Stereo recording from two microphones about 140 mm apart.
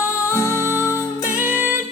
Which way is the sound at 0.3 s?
20° left (ahead or behind).